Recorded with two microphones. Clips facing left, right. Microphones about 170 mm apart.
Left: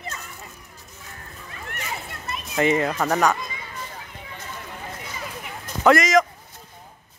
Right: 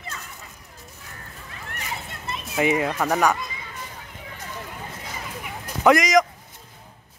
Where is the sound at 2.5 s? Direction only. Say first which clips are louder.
Left 1 dB; 10° right (ahead or behind).